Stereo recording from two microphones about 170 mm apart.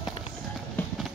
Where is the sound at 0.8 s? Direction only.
10° left (ahead or behind).